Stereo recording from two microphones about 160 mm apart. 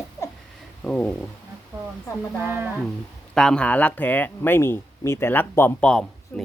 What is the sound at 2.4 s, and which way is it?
Speech, 10° right (ahead or behind).